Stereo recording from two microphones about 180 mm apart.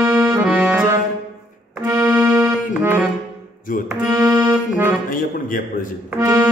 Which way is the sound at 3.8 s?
15° right (ahead or behind).